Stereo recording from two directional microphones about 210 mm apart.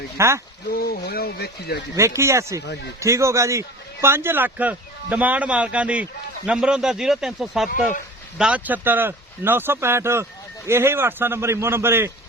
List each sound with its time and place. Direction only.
0.2 s a man's voice: 15° right (ahead or behind)
0.7 s speech: 45° left (ahead or behind)
2.0 s a man's voice: 15° right (ahead or behind)